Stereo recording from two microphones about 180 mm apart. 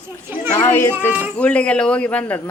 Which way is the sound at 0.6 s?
10° left (ahead or behind).